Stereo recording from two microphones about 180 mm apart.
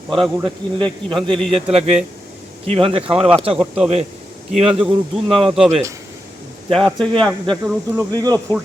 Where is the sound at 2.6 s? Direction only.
30° right (ahead or behind).